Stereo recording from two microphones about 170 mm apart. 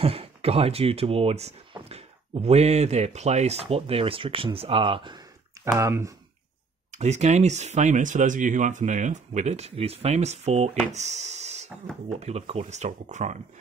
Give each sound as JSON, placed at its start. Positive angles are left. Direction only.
{"t": 0.0, "sound": "speech", "side_deg": -35}
{"t": 5.8, "sound": "speech", "side_deg": -15}
{"t": 6.9, "sound": "speech", "side_deg": -40}
{"t": 10.9, "sound": "a sound", "side_deg": -40}
{"t": 12.2, "sound": "speech", "side_deg": -40}